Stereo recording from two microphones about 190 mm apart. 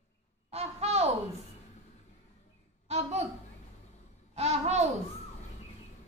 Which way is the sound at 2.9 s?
35° right (ahead or behind).